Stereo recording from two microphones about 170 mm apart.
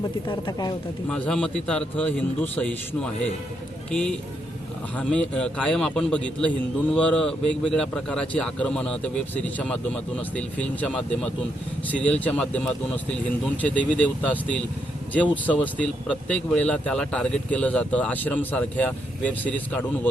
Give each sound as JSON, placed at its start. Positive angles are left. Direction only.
{"t": 0.3, "sound": "speech", "side_deg": 25}
{"t": 1.0, "sound": "a man's voice", "side_deg": 5}